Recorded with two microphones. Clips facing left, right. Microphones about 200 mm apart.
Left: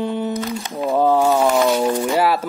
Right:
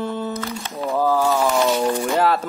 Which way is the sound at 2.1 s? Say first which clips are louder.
Left 1 dB; 10° left (ahead or behind).